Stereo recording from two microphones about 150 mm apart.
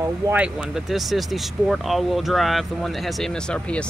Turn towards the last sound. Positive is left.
turn(degrees=5)  # may be behind; listen again after turning